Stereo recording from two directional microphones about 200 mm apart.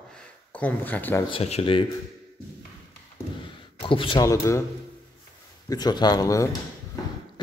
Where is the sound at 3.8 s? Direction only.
25° left (ahead or behind).